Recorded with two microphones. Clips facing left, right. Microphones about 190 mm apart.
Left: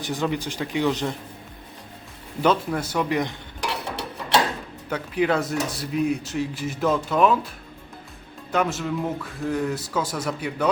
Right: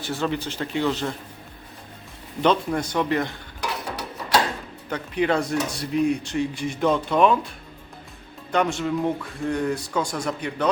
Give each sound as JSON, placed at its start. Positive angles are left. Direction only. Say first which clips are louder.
{"t": 0.0, "sound": "speech", "louder": "even", "side_deg": 15}
{"t": 2.4, "sound": "speech", "louder": "right 1 dB", "side_deg": 5}
{"t": 3.7, "sound": "a sound", "louder": "left 1 dB", "side_deg": 25}
{"t": 4.9, "sound": "speech", "louder": "even", "side_deg": 5}
{"t": 8.5, "sound": "speech", "louder": "right 1 dB", "side_deg": 5}